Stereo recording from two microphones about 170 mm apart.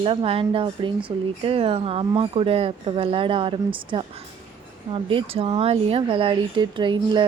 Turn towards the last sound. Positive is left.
turn(degrees=-25)  # may be behind; listen again after turning